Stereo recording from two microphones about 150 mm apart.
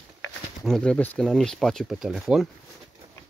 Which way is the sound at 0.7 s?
5° left (ahead or behind).